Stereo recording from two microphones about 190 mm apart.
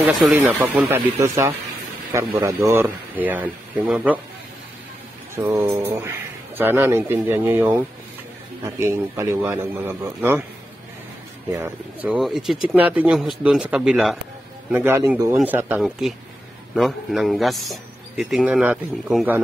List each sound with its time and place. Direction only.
0.2 s speech: 10° right (ahead or behind)
5.3 s speech: 15° right (ahead or behind)
11.5 s a man's voice: 10° right (ahead or behind)